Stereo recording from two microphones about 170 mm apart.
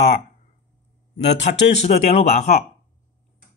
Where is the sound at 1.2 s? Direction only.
90° left.